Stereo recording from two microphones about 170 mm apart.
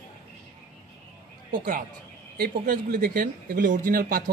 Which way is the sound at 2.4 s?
55° right (ahead or behind).